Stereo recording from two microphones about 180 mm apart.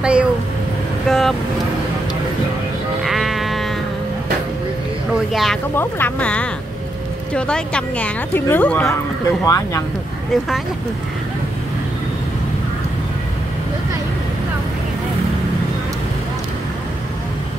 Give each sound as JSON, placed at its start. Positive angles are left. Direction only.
{"t": 0.0, "sound": "speech", "side_deg": -5}
{"t": 3.0, "sound": "sheep", "side_deg": 0}
{"t": 5.3, "sound": "speech", "side_deg": 0}
{"t": 5.8, "sound": "speech", "side_deg": 10}